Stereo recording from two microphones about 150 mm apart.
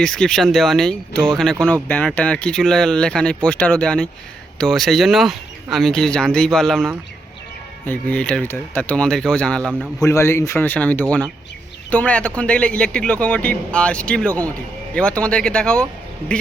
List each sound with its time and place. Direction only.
0.0 s speech: 5° left (ahead or behind)
10.0 s speech: 20° left (ahead or behind)